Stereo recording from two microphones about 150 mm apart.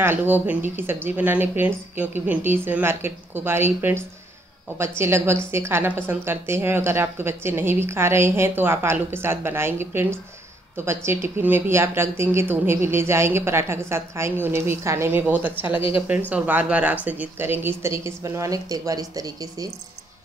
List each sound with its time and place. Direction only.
0.0 s a woman's voice: 15° right (ahead or behind)